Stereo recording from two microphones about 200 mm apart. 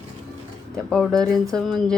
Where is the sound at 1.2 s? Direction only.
15° right (ahead or behind).